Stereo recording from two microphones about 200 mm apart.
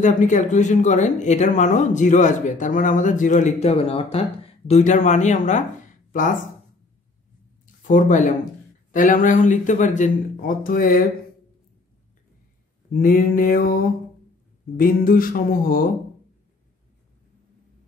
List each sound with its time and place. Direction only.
0.0 s speech: 40° left (ahead or behind)
7.8 s speech: 40° left (ahead or behind)
13.0 s music: 45° left (ahead or behind)